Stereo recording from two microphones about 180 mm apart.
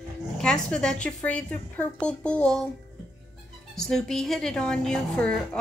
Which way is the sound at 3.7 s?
5° left (ahead or behind).